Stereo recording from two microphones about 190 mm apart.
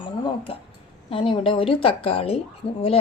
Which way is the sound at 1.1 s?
25° left (ahead or behind).